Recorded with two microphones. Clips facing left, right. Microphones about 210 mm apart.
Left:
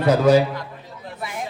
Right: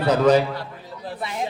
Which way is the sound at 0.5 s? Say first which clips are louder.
Even; 30° right (ahead or behind).